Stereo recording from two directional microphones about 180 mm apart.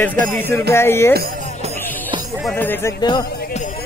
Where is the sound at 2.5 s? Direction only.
10° left (ahead or behind).